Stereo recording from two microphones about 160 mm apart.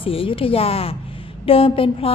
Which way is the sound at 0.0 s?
35° left (ahead or behind).